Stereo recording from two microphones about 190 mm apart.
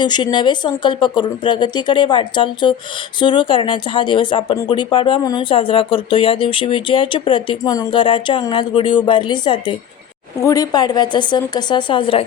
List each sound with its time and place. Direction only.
0.0 s speech: 25° left (ahead or behind)